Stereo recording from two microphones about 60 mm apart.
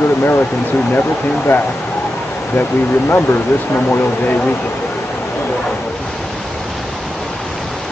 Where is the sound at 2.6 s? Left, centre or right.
Left.